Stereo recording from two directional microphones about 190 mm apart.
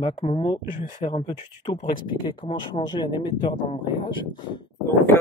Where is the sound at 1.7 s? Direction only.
25° left (ahead or behind).